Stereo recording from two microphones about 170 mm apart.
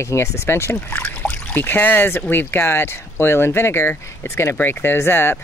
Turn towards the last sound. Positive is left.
turn(degrees=15)  # may be behind; listen again after turning